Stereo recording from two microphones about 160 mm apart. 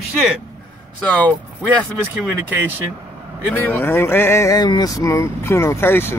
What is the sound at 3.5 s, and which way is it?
Speech, 15° left (ahead or behind).